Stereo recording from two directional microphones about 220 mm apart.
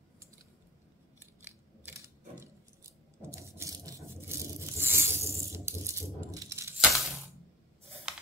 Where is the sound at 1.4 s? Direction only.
10° right (ahead or behind).